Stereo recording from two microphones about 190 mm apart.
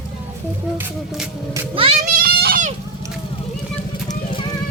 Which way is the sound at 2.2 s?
50° right (ahead or behind).